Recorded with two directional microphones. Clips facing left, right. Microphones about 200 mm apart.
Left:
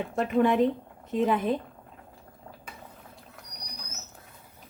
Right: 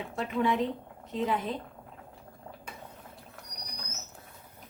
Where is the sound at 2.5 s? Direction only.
10° right (ahead or behind).